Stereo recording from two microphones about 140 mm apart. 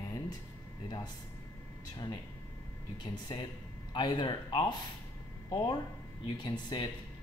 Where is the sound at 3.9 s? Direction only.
35° left (ahead or behind).